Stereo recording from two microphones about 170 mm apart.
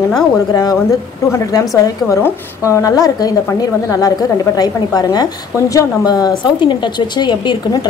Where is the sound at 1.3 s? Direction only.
20° left (ahead or behind).